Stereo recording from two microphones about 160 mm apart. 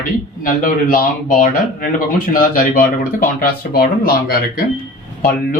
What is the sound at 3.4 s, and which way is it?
Speech, 70° left (ahead or behind).